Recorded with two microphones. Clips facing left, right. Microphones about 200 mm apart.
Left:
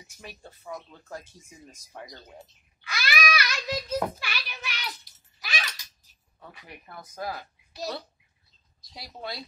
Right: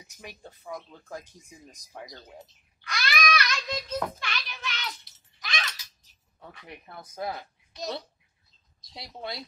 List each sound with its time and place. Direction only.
0.2 s speech: 15° right (ahead or behind)
2.8 s a sound: 5° left (ahead or behind)
4.2 s child singing: 10° left (ahead or behind)
5.4 s a sound: 10° left (ahead or behind)
7.0 s speech: 25° right (ahead or behind)
7.3 s a woman's voice: 5° left (ahead or behind)
8.9 s speech: 25° right (ahead or behind)